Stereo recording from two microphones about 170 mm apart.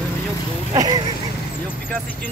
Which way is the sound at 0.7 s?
20° right (ahead or behind).